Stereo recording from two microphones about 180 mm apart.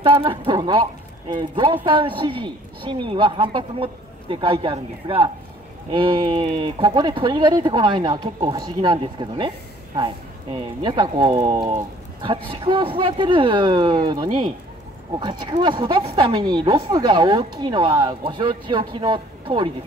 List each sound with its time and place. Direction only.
0.0 s speech: 25° right (ahead or behind)